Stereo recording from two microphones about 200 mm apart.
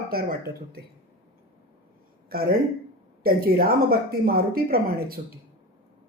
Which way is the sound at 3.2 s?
50° right (ahead or behind).